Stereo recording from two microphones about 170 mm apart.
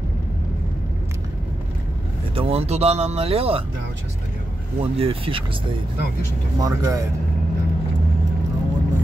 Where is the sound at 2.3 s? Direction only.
35° right (ahead or behind).